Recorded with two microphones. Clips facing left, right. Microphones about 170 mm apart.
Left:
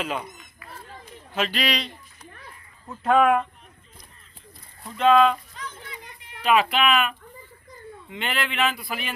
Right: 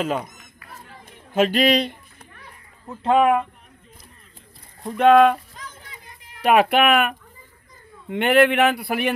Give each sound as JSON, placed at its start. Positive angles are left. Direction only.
{"t": 0.0, "sound": "speech", "side_deg": -45}
{"t": 0.7, "sound": "chatter", "side_deg": -50}
{"t": 2.9, "sound": "speech", "side_deg": -25}
{"t": 4.8, "sound": "speech", "side_deg": -60}
{"t": 5.5, "sound": "a sound", "side_deg": -40}
{"t": 6.4, "sound": "speech", "side_deg": -60}